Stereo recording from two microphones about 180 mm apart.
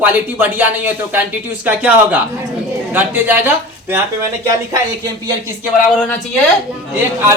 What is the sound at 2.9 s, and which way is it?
A man's voice, 10° right (ahead or behind).